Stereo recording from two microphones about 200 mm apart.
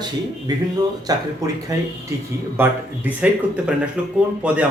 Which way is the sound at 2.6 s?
10° right (ahead or behind).